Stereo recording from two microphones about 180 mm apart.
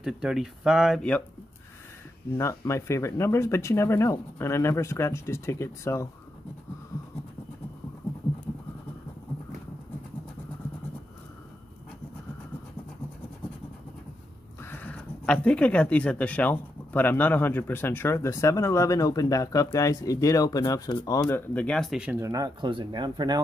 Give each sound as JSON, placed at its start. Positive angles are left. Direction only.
{"t": 0.0, "sound": "speech", "side_deg": -5}
{"t": 2.3, "sound": "speech", "side_deg": 15}
{"t": 14.6, "sound": "speech", "side_deg": 10}
{"t": 21.3, "sound": "speech", "side_deg": 10}